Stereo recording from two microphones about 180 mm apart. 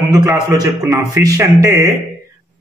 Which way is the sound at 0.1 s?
20° right (ahead or behind).